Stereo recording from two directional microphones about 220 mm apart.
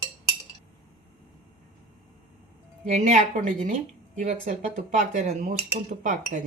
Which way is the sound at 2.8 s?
35° right (ahead or behind).